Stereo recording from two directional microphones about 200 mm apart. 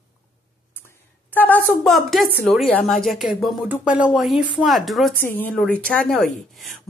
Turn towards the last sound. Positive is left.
turn(degrees=0)  # may be behind; listen again after turning